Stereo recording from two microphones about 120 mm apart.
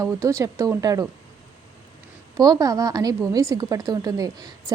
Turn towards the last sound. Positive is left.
turn(degrees=-30)  # may be behind; listen again after turning